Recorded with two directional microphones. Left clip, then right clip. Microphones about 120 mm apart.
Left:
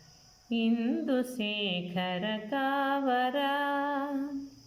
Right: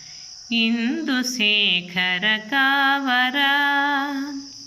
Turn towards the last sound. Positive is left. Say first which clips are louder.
# right 11 dB
turn(degrees=40)  # may be behind; listen again after turning